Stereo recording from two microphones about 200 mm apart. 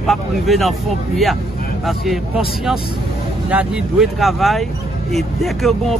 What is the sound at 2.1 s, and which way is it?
Speech, centre (ahead or behind).